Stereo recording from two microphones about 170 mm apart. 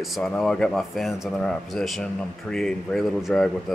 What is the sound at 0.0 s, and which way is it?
Speech, centre (ahead or behind).